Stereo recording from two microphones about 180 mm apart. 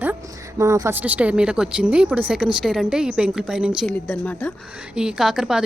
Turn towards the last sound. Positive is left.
turn(degrees=-5)  # may be behind; listen again after turning